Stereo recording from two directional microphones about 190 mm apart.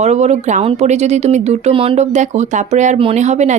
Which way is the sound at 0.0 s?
35° right (ahead or behind).